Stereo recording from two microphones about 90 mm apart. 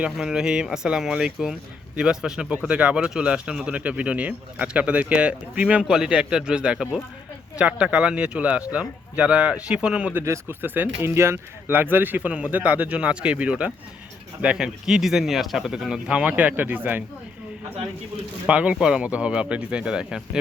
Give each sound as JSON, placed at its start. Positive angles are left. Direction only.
{"t": 0.0, "sound": "speech", "side_deg": -5}
{"t": 10.2, "sound": "speech", "side_deg": -30}
{"t": 18.4, "sound": "speech", "side_deg": -15}